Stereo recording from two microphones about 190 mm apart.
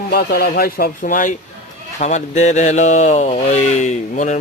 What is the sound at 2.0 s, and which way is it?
Mantra, 40° left (ahead or behind).